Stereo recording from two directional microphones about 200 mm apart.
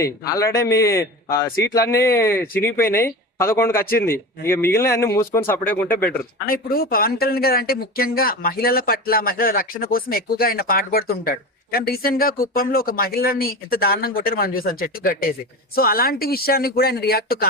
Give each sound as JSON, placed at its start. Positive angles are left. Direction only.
{"t": 0.0, "sound": "speech", "side_deg": 15}
{"t": 6.4, "sound": "speech", "side_deg": 45}